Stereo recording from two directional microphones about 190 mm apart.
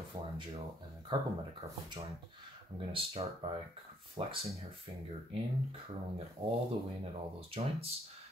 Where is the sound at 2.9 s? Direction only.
30° right (ahead or behind).